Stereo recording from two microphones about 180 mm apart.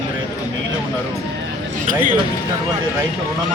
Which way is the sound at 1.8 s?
45° right (ahead or behind).